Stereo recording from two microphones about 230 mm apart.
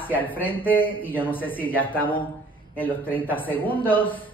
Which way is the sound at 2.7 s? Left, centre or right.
Centre.